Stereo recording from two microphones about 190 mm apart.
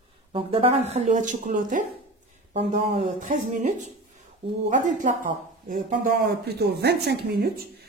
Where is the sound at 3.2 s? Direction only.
45° right (ahead or behind).